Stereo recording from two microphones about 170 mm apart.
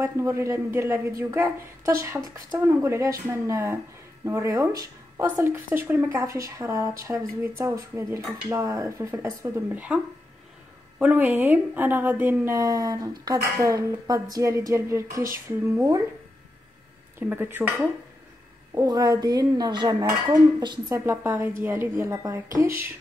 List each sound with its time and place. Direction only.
0.0 s a woman's voice: 15° right (ahead or behind)
11.0 s a woman's voice: 10° right (ahead or behind)
17.3 s a woman's voice: 10° right (ahead or behind)
18.8 s a woman's voice: 20° right (ahead or behind)